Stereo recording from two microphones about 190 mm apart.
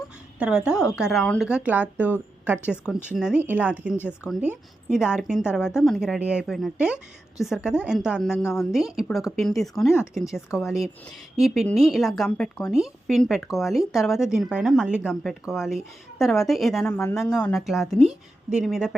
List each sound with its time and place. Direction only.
0.3 s a woman's voice: 5° right (ahead or behind)